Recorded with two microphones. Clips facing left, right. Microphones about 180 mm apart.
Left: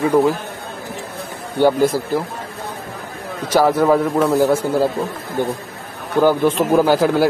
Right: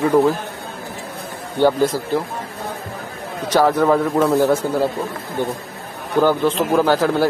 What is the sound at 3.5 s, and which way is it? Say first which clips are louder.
Speech: left 1 dB; 10° left (ahead or behind).